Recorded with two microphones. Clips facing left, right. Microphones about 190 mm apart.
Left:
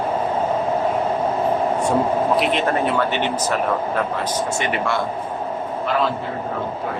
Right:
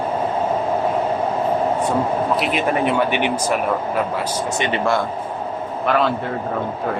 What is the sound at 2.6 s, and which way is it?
Speech, 15° right (ahead or behind).